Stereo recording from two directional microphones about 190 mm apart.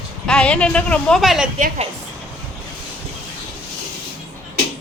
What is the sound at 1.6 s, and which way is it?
Speech, 40° right (ahead or behind).